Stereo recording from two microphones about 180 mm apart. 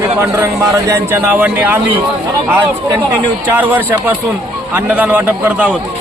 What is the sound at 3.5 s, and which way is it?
A man's voice, 10° right (ahead or behind).